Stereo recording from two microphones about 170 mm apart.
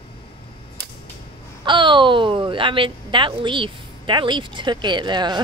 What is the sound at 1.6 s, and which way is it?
A woman's voice, 30° right (ahead or behind).